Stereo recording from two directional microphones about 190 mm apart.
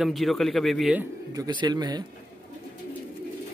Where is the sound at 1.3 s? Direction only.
20° right (ahead or behind).